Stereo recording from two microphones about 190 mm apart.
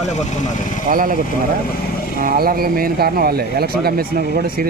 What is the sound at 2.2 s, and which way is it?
Speech, 50° right (ahead or behind).